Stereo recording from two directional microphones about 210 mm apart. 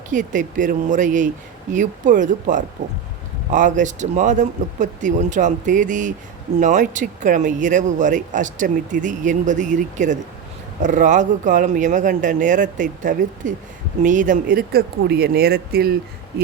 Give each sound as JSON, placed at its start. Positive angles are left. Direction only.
{"t": 0.1, "sound": "speech", "side_deg": -40}